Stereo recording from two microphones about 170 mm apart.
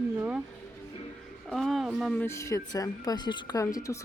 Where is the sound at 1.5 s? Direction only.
Centre (ahead or behind).